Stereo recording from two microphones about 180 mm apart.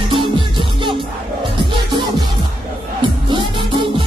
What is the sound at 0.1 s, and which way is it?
Music, 30° right (ahead or behind).